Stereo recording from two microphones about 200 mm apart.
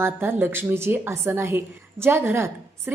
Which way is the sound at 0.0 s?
10° right (ahead or behind).